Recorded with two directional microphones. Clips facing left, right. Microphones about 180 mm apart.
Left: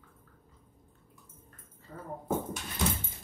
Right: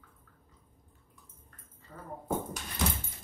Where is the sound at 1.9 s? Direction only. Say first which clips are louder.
Left 3 dB; 30° left (ahead or behind).